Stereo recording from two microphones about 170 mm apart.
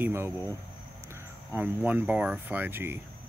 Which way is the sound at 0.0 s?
15° right (ahead or behind).